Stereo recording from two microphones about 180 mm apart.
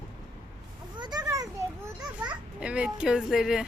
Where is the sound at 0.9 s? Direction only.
25° right (ahead or behind).